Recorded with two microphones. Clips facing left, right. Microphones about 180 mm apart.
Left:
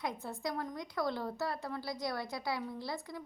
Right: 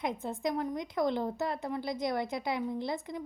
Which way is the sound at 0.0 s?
20° right (ahead or behind).